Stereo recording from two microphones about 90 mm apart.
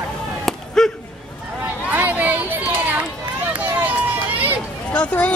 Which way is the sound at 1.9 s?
20° right (ahead or behind).